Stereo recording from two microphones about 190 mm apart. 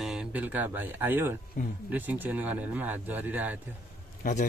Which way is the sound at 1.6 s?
45° left (ahead or behind).